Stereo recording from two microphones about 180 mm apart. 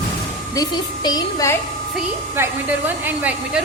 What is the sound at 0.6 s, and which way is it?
A woman's voice, 20° left (ahead or behind).